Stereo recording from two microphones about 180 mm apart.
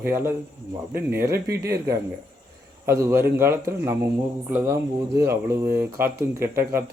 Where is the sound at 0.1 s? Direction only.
15° right (ahead or behind).